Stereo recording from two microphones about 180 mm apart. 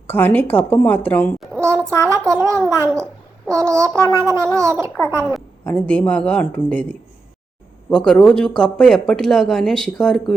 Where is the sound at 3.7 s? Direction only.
15° right (ahead or behind).